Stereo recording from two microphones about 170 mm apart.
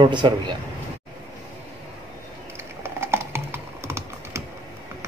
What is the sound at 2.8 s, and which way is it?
Typing, 15° right (ahead or behind).